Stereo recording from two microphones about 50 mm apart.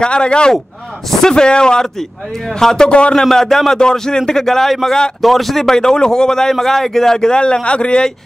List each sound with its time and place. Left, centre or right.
0.0 s a man's voice: centre
2.9 s speech: left
3.3 s a man's voice: centre